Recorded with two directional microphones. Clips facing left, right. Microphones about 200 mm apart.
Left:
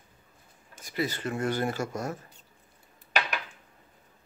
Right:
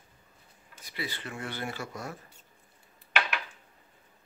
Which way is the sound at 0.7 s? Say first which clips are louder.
Left 8 dB; 45° left (ahead or behind).